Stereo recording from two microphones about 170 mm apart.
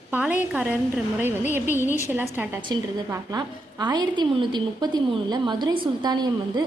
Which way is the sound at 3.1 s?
20° right (ahead or behind).